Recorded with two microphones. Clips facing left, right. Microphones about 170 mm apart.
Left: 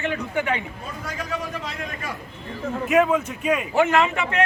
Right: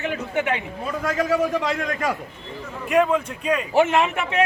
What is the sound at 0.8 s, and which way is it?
A man's voice, 85° right.